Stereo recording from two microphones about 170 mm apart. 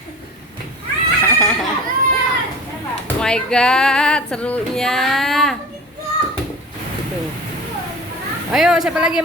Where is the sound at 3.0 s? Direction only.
5° left (ahead or behind).